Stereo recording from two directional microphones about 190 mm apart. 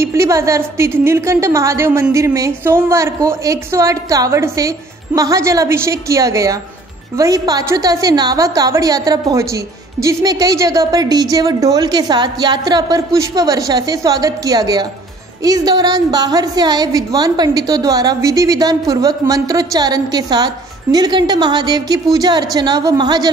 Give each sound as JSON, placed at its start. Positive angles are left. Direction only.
{"t": 0.0, "sound": "a woman's voice", "side_deg": -15}